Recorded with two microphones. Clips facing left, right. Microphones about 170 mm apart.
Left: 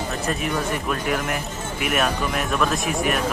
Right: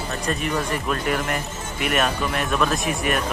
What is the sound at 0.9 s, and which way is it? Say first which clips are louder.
Speech: right 2 dB; 5° left (ahead or behind).